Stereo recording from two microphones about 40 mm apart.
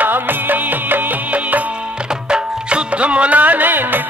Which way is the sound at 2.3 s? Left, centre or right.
Right.